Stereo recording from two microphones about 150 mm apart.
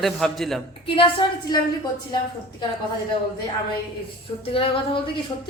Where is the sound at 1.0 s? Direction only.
35° left (ahead or behind).